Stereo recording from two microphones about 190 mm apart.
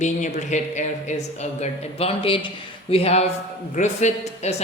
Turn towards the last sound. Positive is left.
turn(degrees=35)  # may be behind; listen again after turning